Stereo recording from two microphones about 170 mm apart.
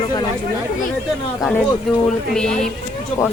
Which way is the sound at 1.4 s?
5° left (ahead or behind).